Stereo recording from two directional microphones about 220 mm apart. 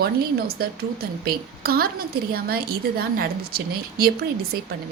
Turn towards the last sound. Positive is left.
turn(degrees=-45)  # may be behind; listen again after turning